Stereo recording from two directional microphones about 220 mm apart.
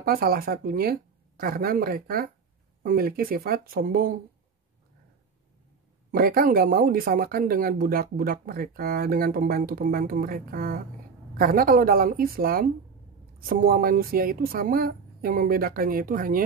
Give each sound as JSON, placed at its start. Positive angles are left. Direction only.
{"t": 0.0, "sound": "speech", "side_deg": -45}
{"t": 6.1, "sound": "speech", "side_deg": -40}